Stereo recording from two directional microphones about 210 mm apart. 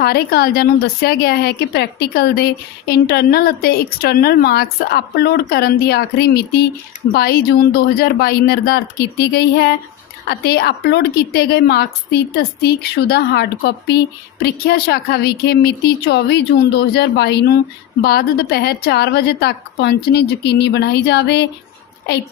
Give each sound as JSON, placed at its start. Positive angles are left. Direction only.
{"t": 0.0, "sound": "a woman's voice", "side_deg": 45}